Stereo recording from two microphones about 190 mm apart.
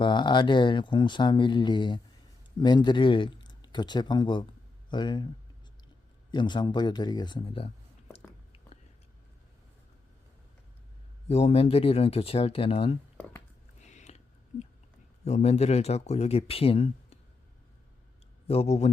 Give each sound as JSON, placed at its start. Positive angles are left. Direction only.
{"t": 0.0, "sound": "speech", "side_deg": 25}
{"t": 6.3, "sound": "speech", "side_deg": 25}
{"t": 11.3, "sound": "speech", "side_deg": 35}
{"t": 13.1, "sound": "a sound", "side_deg": 10}
{"t": 13.8, "sound": "a sound", "side_deg": 35}
{"t": 15.2, "sound": "speech", "side_deg": 35}
{"t": 18.4, "sound": "speech", "side_deg": 35}